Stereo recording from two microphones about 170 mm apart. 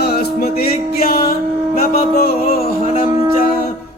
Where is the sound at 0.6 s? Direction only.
65° left (ahead or behind).